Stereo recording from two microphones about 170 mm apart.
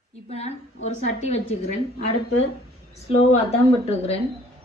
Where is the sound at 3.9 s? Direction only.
35° left (ahead or behind).